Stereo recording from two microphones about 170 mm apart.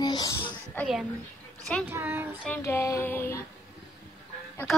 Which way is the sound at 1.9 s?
15° right (ahead or behind).